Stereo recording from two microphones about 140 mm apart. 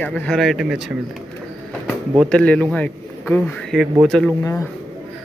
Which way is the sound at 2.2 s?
5° left (ahead or behind).